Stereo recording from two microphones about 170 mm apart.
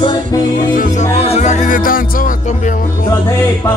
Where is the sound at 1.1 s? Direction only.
40° left (ahead or behind); by 2.7 s 55° left (ahead or behind).